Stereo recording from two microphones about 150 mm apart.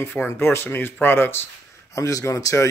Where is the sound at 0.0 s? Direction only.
15° left (ahead or behind).